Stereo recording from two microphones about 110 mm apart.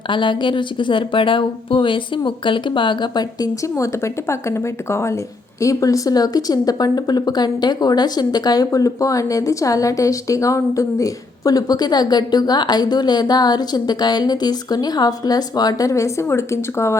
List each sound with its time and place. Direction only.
0.1 s speech: 45° left (ahead or behind); by 17.0 s 25° left (ahead or behind)